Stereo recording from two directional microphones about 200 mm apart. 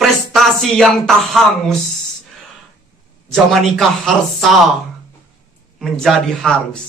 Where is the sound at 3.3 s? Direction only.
Centre (ahead or behind).